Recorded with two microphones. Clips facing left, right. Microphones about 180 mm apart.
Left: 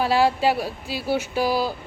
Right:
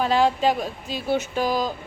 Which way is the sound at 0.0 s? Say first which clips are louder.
Even; 10° left (ahead or behind).